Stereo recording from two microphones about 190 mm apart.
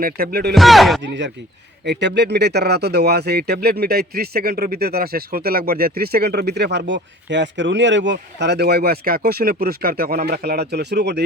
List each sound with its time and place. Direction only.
0.0 s speech: 50° right (ahead or behind)
0.5 s speech: centre (ahead or behind)
1.0 s speech: 70° right (ahead or behind)